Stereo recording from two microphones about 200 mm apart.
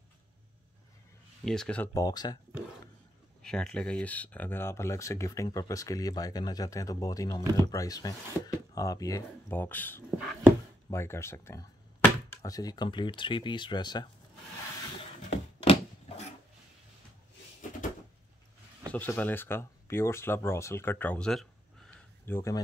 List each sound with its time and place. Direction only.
1.4 s speech: 5° left (ahead or behind)
2.0 s speech: 20° left (ahead or behind)
3.4 s speech: 5° left (ahead or behind)
10.1 s a sound: 5° right (ahead or behind)
10.9 s speech: 15° left (ahead or behind)
15.2 s a sound: 30° left (ahead or behind)
18.9 s speech: 10° left (ahead or behind)